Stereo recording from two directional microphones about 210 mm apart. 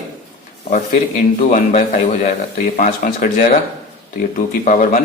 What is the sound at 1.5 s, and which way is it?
Speech, 35° left (ahead or behind).